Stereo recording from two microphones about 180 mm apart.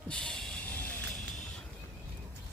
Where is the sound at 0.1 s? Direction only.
5° left (ahead or behind).